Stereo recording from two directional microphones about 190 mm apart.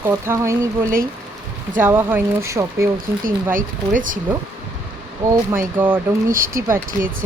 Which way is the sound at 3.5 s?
45° right (ahead or behind).